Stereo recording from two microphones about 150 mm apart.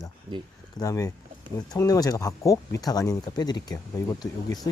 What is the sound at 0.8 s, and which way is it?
Speech, 20° left (ahead or behind).